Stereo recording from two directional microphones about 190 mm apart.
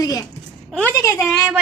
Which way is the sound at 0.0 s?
15° left (ahead or behind).